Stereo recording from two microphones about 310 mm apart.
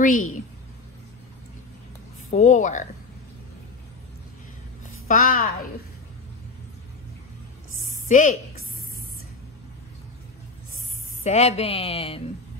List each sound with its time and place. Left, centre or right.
0.0 s speech: left
2.3 s speech: left
5.0 s speech: left
7.9 s a sound: left
11.2 s speech: left